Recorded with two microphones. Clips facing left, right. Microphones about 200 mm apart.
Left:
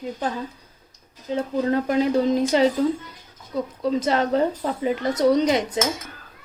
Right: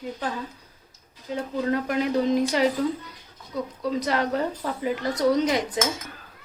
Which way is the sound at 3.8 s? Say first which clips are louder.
Left 4 dB; 25° left (ahead or behind).